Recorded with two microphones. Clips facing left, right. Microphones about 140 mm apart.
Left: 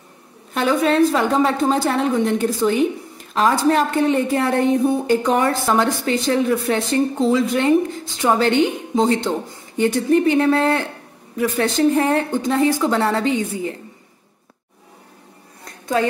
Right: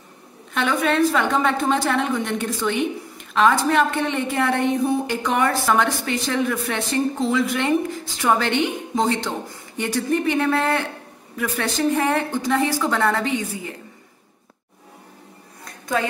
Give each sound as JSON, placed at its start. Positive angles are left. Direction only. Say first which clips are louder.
{"t": 0.6, "sound": "a woman's voice", "louder": "left 4 dB", "side_deg": 35}